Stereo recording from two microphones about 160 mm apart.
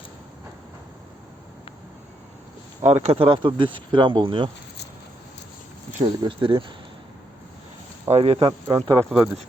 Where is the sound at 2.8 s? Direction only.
45° right (ahead or behind).